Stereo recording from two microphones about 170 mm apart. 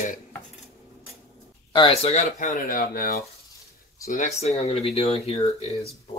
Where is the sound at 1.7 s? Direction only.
30° left (ahead or behind); by 3.2 s 60° left (ahead or behind).